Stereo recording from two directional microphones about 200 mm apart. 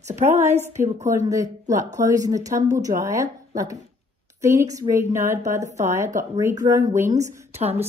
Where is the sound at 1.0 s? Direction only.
15° right (ahead or behind).